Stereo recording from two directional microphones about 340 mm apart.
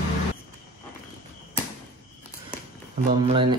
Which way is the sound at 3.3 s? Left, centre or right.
Centre.